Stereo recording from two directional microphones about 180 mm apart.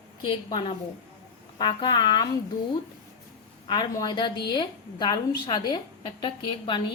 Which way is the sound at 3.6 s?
25° left (ahead or behind).